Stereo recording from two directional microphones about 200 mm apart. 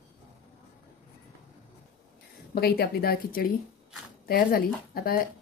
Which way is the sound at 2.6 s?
50° left (ahead or behind).